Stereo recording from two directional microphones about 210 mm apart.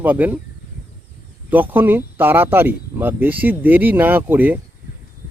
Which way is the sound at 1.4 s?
10° right (ahead or behind).